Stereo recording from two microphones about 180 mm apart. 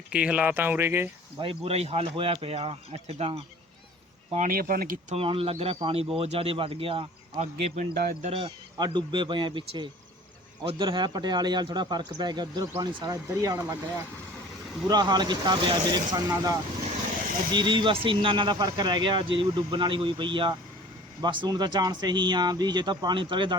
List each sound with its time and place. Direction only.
0.1 s speech: 5° right (ahead or behind)
1.4 s speech: 30° right (ahead or behind)
4.4 s speech: 50° right (ahead or behind)
5.1 s speech: 30° right (ahead or behind)
14.8 s speech: 20° right (ahead or behind)